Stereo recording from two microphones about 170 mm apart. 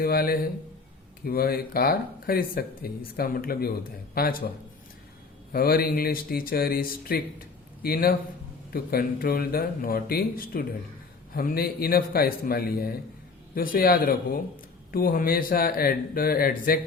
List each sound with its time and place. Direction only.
0.0 s speech: 60° left (ahead or behind)
5.5 s speech: 60° left (ahead or behind)